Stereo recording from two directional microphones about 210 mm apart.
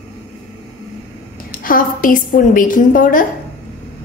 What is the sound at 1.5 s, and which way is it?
A woman's voice, 40° left (ahead or behind).